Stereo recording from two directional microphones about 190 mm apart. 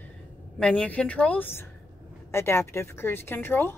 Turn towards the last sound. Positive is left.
turn(degrees=10)  # may be behind; listen again after turning